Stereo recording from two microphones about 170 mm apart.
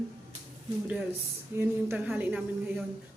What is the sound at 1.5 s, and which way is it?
Speech, 10° right (ahead or behind).